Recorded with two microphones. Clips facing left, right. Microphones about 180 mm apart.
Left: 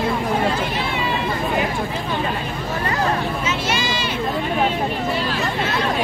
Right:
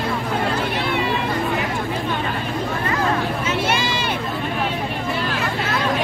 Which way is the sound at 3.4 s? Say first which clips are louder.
Right 1 dB; 55° right (ahead or behind).